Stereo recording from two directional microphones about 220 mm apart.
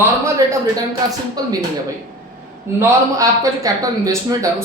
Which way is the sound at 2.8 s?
15° right (ahead or behind).